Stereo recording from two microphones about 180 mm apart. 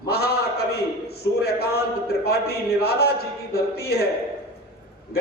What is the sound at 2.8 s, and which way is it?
Speech, 60° left (ahead or behind).